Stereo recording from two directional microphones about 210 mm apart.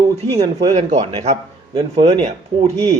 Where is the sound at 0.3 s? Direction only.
30° right (ahead or behind).